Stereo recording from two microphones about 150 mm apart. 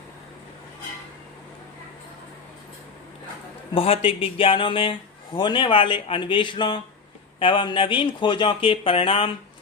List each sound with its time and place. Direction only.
3.8 s speech: 40° left (ahead or behind)